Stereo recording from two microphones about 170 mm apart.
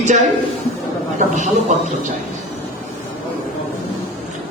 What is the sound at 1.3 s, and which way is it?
Speech, 45° right (ahead or behind).